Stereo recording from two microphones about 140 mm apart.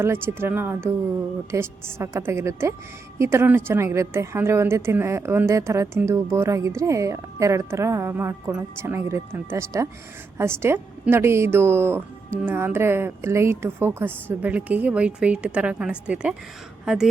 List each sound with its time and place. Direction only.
0.0 s a woman's voice: 15° right (ahead or behind)